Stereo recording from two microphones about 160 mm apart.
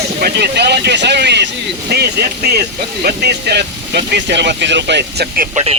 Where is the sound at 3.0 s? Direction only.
80° right.